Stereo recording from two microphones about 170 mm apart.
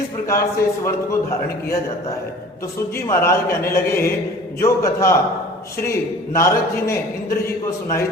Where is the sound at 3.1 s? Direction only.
15° left (ahead or behind).